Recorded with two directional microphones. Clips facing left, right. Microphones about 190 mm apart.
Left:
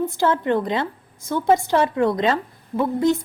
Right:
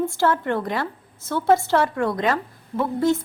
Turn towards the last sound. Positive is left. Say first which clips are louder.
# left 2 dB
turn(degrees=15)  # may be behind; listen again after turning